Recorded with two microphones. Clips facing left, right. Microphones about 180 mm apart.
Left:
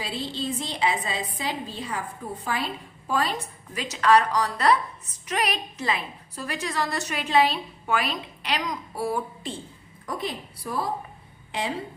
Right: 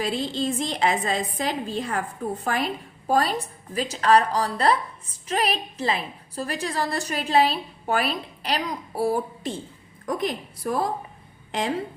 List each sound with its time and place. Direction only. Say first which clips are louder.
0.0 s a woman's voice: right 5 dB; 45° right (ahead or behind)
3.1 s a woman's voice: right 4 dB; 35° right (ahead or behind)
10.1 s a woman's voice: right 5 dB; 50° right (ahead or behind)